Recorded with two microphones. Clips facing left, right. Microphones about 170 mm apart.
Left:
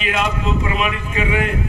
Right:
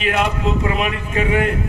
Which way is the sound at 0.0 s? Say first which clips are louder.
Right 2 dB; 60° right (ahead or behind).